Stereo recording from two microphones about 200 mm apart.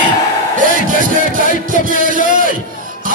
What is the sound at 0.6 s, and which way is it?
Speech, 40° right (ahead or behind).